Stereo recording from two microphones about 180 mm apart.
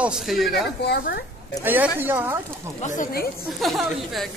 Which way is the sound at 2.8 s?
45° left (ahead or behind).